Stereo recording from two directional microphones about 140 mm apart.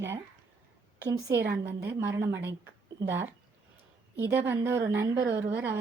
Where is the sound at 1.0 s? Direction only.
25° right (ahead or behind).